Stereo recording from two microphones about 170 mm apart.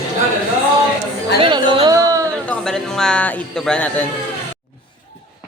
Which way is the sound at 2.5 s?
5° left (ahead or behind).